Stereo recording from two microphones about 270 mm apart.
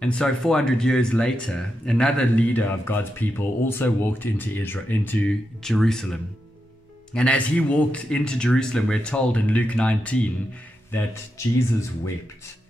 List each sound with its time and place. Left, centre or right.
0.0 s speech: centre
7.2 s speech: centre